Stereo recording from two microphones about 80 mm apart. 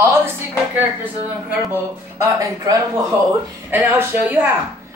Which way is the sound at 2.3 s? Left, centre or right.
Right.